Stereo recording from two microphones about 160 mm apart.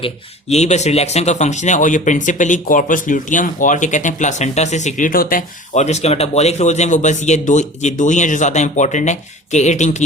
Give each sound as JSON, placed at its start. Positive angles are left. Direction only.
{"t": 0.5, "sound": "speech", "side_deg": 45}
{"t": 5.7, "sound": "speech", "side_deg": 45}